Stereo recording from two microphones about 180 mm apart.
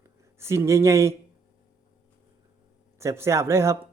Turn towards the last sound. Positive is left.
turn(degrees=-15)  # may be behind; listen again after turning